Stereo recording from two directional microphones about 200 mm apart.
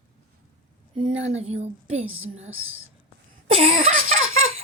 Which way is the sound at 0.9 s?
30° right (ahead or behind).